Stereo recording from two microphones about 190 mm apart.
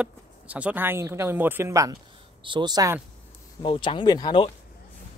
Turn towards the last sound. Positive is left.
turn(degrees=25)  # may be behind; listen again after turning